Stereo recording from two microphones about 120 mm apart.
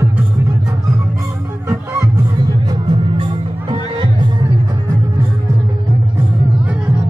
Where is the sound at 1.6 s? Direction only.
30° right (ahead or behind).